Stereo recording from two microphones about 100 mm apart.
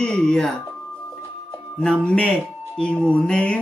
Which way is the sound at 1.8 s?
10° left (ahead or behind).